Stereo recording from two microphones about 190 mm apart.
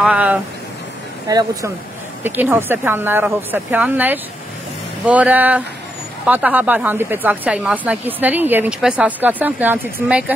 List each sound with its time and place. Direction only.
0.0 s speech: 5° right (ahead or behind)
1.2 s speech: 20° right (ahead or behind)